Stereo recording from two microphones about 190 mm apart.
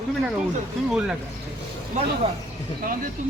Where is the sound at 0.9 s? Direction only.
5° right (ahead or behind).